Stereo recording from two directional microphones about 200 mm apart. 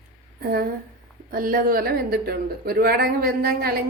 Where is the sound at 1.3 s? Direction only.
45° right (ahead or behind).